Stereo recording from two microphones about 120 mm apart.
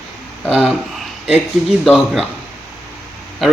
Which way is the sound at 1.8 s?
5° right (ahead or behind).